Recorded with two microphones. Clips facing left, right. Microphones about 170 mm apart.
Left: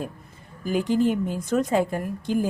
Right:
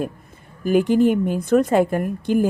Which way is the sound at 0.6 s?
60° right (ahead or behind).